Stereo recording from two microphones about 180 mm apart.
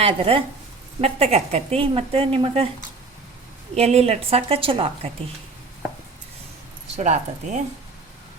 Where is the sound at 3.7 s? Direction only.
35° right (ahead or behind).